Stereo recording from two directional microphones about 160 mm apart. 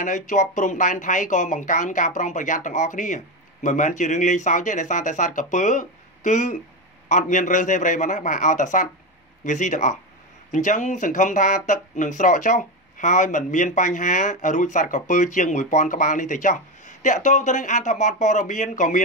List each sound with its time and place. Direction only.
0.0 s speech: 50° left (ahead or behind)